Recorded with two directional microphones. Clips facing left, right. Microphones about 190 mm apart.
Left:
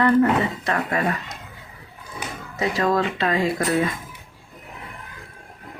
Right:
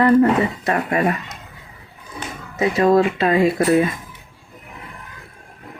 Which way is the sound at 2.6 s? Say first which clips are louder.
Right 6 dB; 25° right (ahead or behind).